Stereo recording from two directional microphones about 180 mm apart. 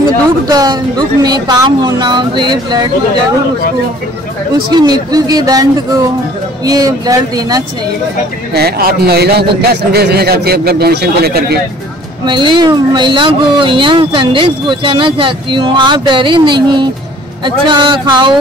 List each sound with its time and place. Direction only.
0.5 s speech: 20° right (ahead or behind)
4.6 s speech: 25° right (ahead or behind)
8.5 s speech: 60° right (ahead or behind)
12.3 s speech: 25° right (ahead or behind)